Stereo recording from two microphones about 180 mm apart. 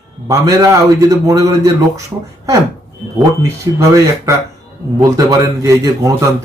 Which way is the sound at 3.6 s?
15° right (ahead or behind).